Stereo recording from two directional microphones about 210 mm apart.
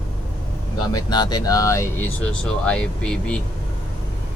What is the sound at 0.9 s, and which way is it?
Speech, 20° left (ahead or behind).